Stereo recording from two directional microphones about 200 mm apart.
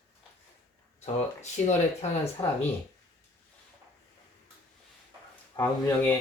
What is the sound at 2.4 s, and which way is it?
Speech, 20° left (ahead or behind).